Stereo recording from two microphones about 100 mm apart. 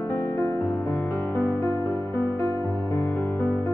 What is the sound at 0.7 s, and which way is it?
Music, 10° left (ahead or behind).